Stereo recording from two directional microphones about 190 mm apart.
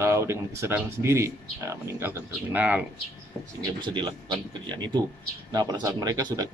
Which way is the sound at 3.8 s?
25° right (ahead or behind).